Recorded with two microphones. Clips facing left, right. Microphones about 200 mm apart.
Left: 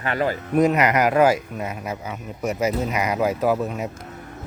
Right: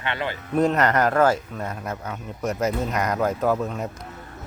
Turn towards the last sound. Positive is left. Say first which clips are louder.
# left 1 dB
turn(degrees=5)  # may be behind; listen again after turning